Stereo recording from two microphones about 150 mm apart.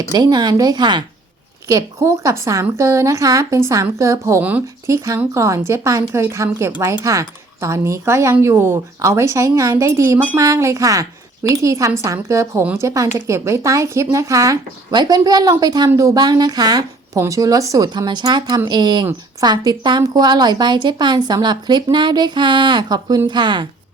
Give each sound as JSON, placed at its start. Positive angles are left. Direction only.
{"t": 0.1, "sound": "a woman's voice", "side_deg": -25}